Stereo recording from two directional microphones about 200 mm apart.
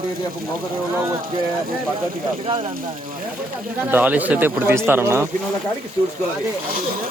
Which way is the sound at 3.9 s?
5° right (ahead or behind).